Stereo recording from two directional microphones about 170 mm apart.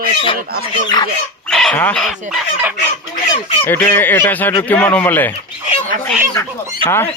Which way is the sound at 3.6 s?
10° left (ahead or behind).